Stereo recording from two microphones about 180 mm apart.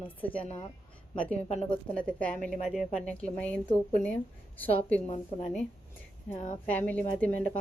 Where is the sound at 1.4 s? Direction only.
35° left (ahead or behind).